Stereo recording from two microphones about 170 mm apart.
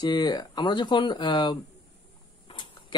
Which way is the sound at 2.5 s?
30° left (ahead or behind).